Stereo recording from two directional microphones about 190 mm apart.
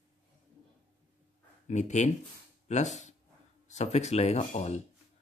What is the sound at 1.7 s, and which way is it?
Speech, 40° left (ahead or behind).